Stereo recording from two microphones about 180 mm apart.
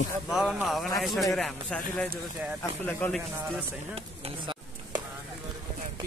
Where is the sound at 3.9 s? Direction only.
30° right (ahead or behind).